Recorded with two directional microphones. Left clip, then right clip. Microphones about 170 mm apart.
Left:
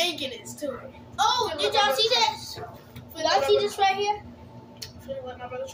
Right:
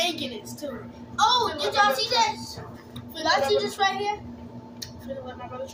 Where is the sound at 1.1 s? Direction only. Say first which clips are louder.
Right 2 dB; 15° left (ahead or behind).